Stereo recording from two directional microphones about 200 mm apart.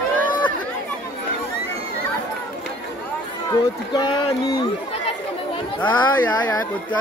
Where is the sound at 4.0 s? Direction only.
25° left (ahead or behind).